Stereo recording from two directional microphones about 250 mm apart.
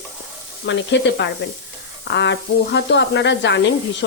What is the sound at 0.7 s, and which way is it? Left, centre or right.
Speech, left.